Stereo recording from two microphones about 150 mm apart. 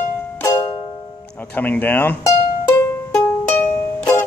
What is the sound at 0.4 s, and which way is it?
Music, 25° left (ahead or behind).